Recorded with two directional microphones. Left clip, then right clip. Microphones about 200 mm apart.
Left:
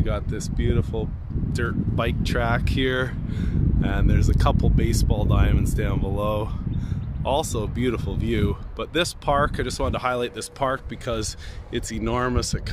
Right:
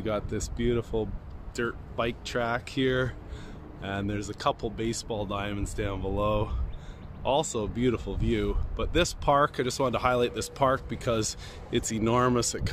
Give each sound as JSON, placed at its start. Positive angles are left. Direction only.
{"t": 0.0, "sound": "speech", "side_deg": 0}
{"t": 1.5, "sound": "speech", "side_deg": 20}
{"t": 2.0, "sound": "speech", "side_deg": 35}